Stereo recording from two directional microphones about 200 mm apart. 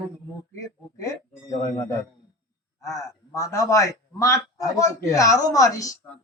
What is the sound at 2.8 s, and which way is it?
A man's voice, 15° left (ahead or behind).